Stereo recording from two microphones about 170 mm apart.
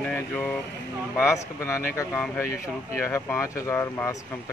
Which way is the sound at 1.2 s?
15° left (ahead or behind).